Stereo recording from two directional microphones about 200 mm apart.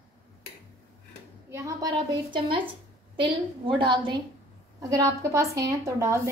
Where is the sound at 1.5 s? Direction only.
15° right (ahead or behind).